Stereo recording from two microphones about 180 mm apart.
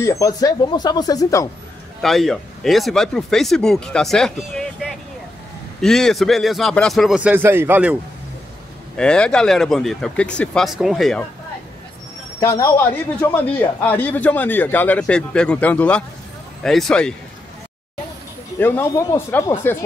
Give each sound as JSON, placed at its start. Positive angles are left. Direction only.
{"t": 0.0, "sound": "speech", "side_deg": 15}
{"t": 2.0, "sound": "speech", "side_deg": 0}
{"t": 8.9, "sound": "speech", "side_deg": 5}
{"t": 12.4, "sound": "speech", "side_deg": 20}
{"t": 18.6, "sound": "speech", "side_deg": 10}